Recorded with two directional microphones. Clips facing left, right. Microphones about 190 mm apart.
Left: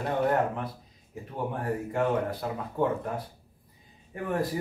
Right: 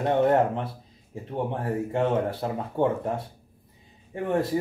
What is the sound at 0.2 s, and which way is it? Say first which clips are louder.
Speech: right 3 dB; 30° right (ahead or behind).